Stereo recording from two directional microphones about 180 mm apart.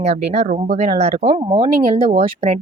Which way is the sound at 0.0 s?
35° right (ahead or behind).